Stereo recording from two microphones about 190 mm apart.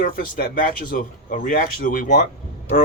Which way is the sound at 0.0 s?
50° left (ahead or behind).